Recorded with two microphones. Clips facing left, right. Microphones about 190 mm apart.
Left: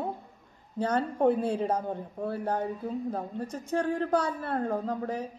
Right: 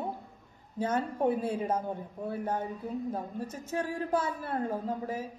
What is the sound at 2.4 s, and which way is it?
Speech, 30° left (ahead or behind).